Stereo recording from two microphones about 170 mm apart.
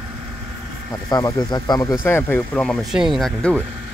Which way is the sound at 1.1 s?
25° left (ahead or behind).